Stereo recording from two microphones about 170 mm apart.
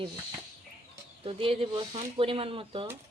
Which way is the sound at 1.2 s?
35° right (ahead or behind).